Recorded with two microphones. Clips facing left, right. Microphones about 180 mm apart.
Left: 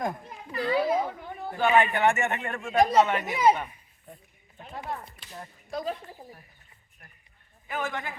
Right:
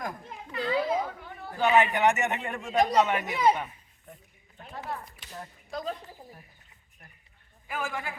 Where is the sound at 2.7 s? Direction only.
Centre (ahead or behind).